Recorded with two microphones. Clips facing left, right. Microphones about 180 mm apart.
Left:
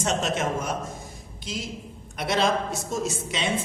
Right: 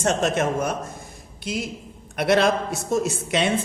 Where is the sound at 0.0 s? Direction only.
55° right (ahead or behind).